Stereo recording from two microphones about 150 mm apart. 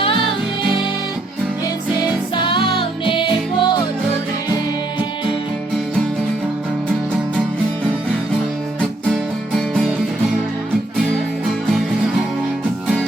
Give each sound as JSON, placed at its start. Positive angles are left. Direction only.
{"t": 2.3, "sound": "music", "side_deg": 35}
{"t": 8.8, "sound": "music", "side_deg": 0}